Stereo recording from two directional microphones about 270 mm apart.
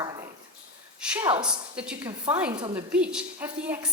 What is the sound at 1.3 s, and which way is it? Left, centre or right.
Speech, centre.